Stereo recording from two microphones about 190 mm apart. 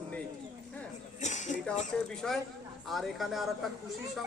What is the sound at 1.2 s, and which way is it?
Music, 40° left (ahead or behind).